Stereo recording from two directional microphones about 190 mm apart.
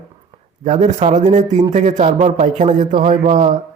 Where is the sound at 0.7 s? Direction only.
35° right (ahead or behind).